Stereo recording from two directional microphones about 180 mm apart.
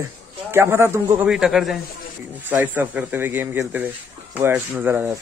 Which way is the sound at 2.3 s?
10° right (ahead or behind).